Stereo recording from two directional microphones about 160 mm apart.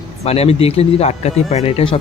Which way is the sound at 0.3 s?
40° left (ahead or behind).